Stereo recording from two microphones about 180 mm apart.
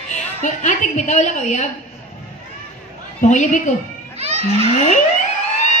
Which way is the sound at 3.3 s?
40° left (ahead or behind).